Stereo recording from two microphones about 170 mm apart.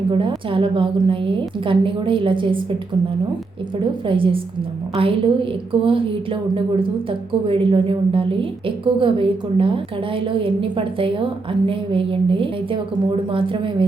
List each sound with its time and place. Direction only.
0.1 s a woman's voice: 30° right (ahead or behind)
4.0 s a woman's voice: 30° right (ahead or behind)
7.4 s a woman's voice: 30° right (ahead or behind)